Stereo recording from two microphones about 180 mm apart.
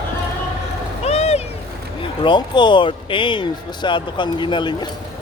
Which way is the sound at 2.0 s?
25° left (ahead or behind).